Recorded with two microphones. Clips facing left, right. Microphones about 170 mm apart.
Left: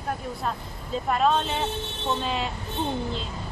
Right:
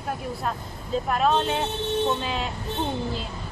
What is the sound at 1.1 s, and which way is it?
Speech, centre (ahead or behind).